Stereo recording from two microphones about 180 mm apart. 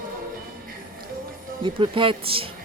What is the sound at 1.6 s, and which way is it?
Speech, 30° right (ahead or behind).